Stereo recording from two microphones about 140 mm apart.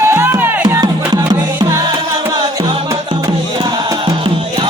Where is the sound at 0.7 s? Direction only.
25° right (ahead or behind).